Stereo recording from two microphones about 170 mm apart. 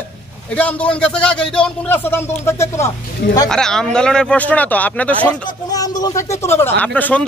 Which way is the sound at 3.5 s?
5° left (ahead or behind).